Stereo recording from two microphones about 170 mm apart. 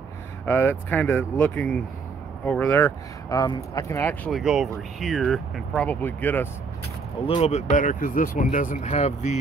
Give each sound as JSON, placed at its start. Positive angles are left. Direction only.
{"t": 0.5, "sound": "speech", "side_deg": 10}
{"t": 3.3, "sound": "speech", "side_deg": 20}
{"t": 4.0, "sound": "speech", "side_deg": 10}
{"t": 4.4, "sound": "speech", "side_deg": 0}
{"t": 7.2, "sound": "speech", "side_deg": 35}